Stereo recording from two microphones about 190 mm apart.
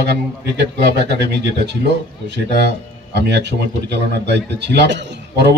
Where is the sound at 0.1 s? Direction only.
60° right (ahead or behind).